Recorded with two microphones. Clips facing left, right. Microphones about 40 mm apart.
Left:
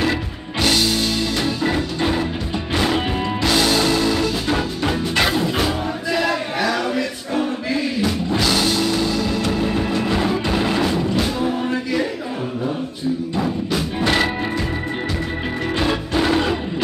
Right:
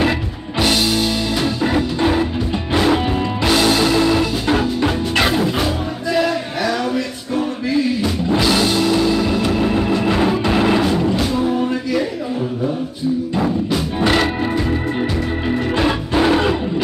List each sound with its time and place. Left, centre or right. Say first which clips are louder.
0.6 s music: right 2 dB; centre
6.1 s music: right 2 dB; centre
8.0 s music: right 2 dB; centre; by 10.8 s right
10.8 s music: right 2 dB; centre
13.4 s music: right 3 dB; centre
15.7 s music: right 1 dB; centre